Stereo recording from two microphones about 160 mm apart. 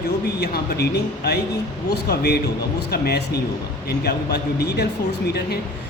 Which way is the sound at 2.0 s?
85° left.